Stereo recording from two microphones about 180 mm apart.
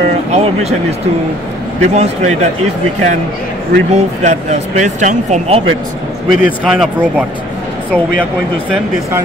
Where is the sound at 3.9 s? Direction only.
40° right (ahead or behind).